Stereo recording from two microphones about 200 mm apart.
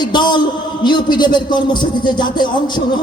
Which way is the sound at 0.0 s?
20° left (ahead or behind).